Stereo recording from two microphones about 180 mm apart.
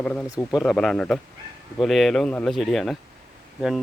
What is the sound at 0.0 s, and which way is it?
Speech, 5° left (ahead or behind).